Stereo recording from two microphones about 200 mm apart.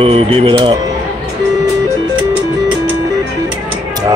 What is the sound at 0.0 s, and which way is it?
Speech, 30° right (ahead or behind).